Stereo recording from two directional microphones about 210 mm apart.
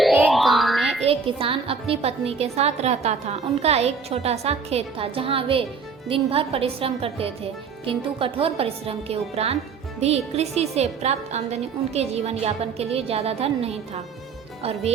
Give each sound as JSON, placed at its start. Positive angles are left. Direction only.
{"t": 0.0, "sound": "music", "side_deg": 0}
{"t": 1.0, "sound": "a woman's voice", "side_deg": -25}